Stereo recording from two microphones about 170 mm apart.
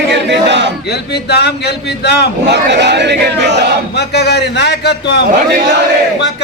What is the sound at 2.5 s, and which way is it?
Speech, 90° right.